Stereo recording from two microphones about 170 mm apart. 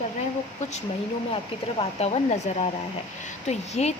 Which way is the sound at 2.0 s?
40° left (ahead or behind).